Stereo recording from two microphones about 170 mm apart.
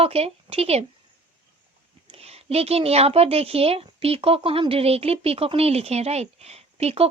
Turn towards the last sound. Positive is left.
turn(degrees=-35)  # may be behind; listen again after turning